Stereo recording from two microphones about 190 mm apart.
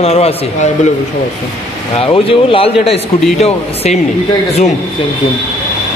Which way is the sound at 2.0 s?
30° left (ahead or behind).